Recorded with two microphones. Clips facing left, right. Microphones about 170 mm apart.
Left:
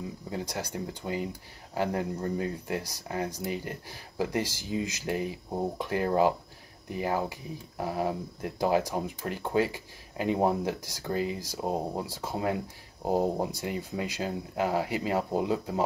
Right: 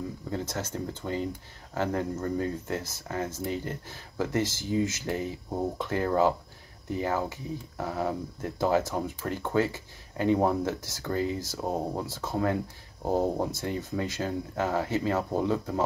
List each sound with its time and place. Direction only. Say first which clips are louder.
0.3 s speech: right 1 dB; 15° left (ahead or behind)